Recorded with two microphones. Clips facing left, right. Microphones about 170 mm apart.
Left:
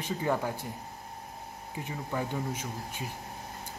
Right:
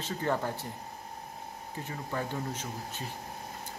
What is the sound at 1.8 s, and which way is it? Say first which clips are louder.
A man's voice: left 2 dB; 15° left (ahead or behind).